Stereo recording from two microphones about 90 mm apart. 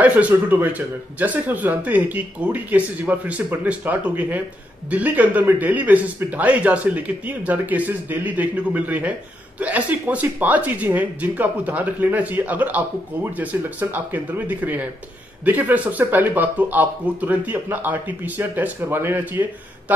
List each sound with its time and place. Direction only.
0.0 s speech: 15° right (ahead or behind)